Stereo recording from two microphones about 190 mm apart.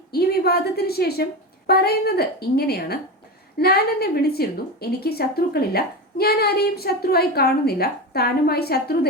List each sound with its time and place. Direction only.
0.1 s a woman's voice: 55° left (ahead or behind)